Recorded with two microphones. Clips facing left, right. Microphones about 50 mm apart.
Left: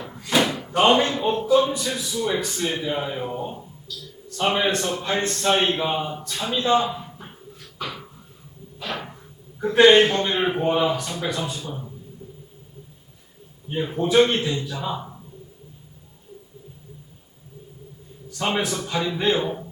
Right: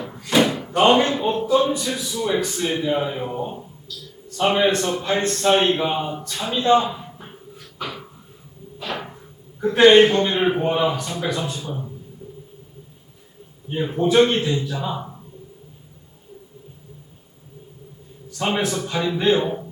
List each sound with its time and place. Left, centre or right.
0.0 s a man's voice: centre
7.8 s a sound: centre
8.8 s whip: centre
9.6 s a man's voice: centre
12.2 s a sound: centre
13.7 s a man's voice: centre
18.3 s a man's voice: centre